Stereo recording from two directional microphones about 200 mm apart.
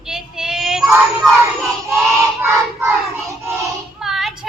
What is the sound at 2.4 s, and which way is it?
Child singing, 10° right (ahead or behind).